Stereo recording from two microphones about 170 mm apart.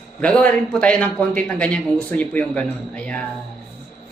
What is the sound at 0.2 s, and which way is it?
Speech, 5° left (ahead or behind).